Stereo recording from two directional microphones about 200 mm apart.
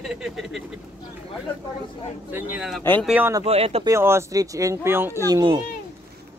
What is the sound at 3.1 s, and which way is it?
Speech, 10° right (ahead or behind).